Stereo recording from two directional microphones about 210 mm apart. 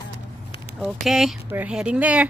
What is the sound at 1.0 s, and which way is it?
Speech, centre (ahead or behind).